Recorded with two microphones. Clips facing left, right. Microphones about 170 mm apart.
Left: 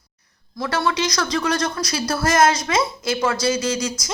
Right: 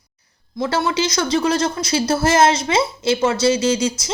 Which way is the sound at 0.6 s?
25° right (ahead or behind).